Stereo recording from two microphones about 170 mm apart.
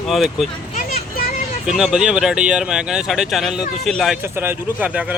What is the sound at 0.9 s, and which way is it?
Vehicle, 60° left (ahead or behind).